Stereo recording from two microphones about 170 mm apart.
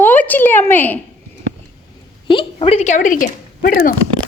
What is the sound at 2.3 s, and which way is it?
A woman's voice, 35° left (ahead or behind).